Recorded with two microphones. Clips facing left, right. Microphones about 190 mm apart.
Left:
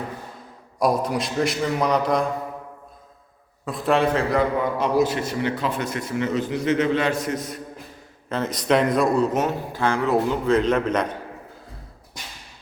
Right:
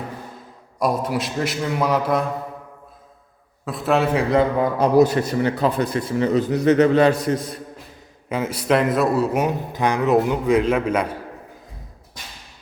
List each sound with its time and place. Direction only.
0.8 s a man's voice: centre (ahead or behind)
3.7 s a man's voice: centre (ahead or behind)
4.4 s a man's voice: 40° right (ahead or behind)
8.3 s speech: 10° right (ahead or behind)